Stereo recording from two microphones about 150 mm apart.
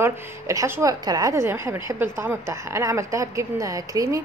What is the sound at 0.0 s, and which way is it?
Speech, 20° right (ahead or behind).